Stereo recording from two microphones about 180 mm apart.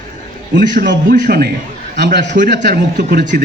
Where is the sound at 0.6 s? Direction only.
55° right (ahead or behind).